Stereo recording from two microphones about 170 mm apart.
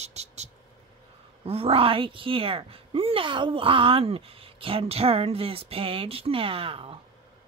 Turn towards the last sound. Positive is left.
turn(degrees=-35)  # may be behind; listen again after turning